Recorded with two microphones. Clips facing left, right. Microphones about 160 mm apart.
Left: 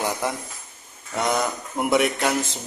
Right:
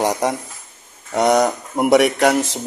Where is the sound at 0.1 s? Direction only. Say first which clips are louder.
Right 7 dB; 40° right (ahead or behind).